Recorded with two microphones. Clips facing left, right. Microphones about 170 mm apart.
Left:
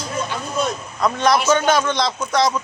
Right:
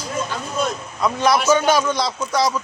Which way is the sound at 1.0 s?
5° right (ahead or behind).